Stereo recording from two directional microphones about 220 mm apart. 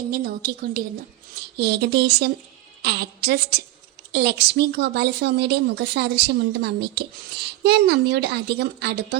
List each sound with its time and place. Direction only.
0.1 s a woman's voice: 40° right (ahead or behind)